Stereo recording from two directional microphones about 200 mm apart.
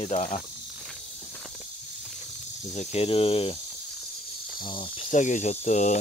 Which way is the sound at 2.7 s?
30° left (ahead or behind).